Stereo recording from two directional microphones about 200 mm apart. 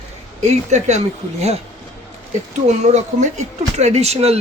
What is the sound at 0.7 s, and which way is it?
Speech, 35° right (ahead or behind).